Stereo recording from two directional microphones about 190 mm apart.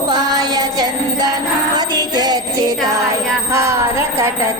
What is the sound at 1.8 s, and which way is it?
Jingle bell, 20° right (ahead or behind).